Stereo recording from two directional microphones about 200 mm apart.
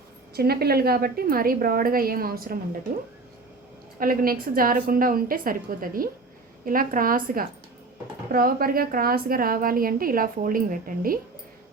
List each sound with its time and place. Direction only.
0.3 s a woman's voice: 50° right (ahead or behind)
4.0 s a woman's voice: 45° right (ahead or behind)